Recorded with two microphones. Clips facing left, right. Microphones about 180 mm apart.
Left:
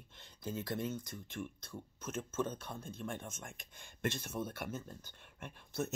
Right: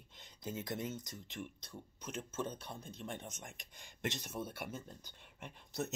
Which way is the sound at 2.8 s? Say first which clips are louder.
Left 3 dB; 55° left (ahead or behind).